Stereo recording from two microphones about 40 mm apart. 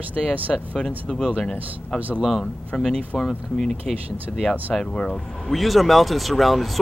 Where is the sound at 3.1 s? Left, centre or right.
Centre.